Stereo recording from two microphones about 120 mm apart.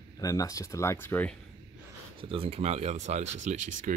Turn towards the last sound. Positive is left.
turn(degrees=-85)